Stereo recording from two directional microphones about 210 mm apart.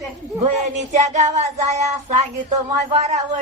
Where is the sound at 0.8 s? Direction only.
35° right (ahead or behind).